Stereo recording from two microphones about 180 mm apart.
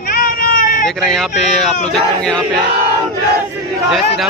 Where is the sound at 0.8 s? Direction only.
Centre (ahead or behind).